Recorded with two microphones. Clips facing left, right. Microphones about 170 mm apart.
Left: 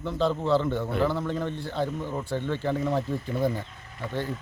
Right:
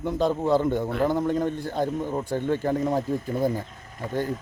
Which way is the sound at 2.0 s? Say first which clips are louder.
Right 3 dB; 15° right (ahead or behind).